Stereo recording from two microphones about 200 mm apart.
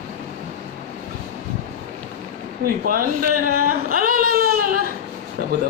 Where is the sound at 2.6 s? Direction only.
45° right (ahead or behind).